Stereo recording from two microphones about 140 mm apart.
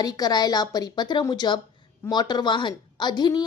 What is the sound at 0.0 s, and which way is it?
A woman's voice, 30° left (ahead or behind).